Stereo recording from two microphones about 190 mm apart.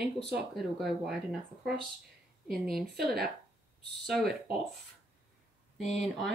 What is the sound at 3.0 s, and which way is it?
Speech, centre (ahead or behind).